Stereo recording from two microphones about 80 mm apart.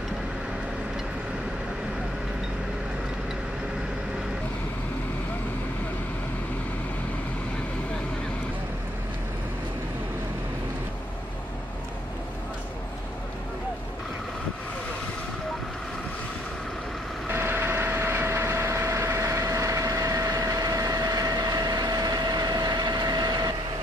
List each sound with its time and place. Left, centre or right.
17.3 s vehicle: right